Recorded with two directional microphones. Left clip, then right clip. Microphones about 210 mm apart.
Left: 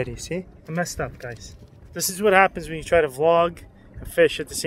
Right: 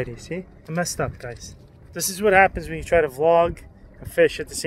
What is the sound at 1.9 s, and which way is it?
Speech, centre (ahead or behind).